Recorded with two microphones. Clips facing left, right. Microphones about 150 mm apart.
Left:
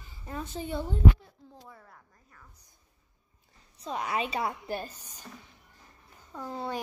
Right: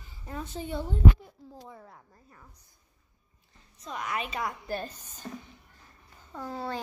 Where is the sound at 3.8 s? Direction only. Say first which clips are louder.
Left 3 dB; 30° left (ahead or behind).